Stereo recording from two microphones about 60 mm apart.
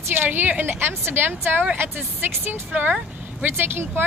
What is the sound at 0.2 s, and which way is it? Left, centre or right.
A woman's voice, right.